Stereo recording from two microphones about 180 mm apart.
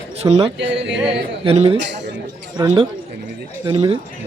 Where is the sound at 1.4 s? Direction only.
30° right (ahead or behind).